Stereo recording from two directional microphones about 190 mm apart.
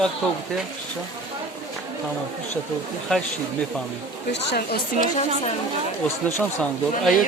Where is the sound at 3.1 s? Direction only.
5° left (ahead or behind).